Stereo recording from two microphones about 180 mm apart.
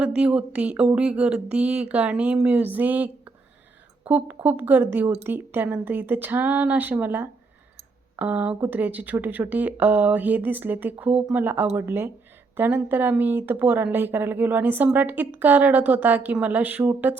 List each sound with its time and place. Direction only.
0.0 s speech: 5° right (ahead or behind)